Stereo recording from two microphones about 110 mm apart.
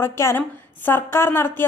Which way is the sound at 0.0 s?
25° left (ahead or behind).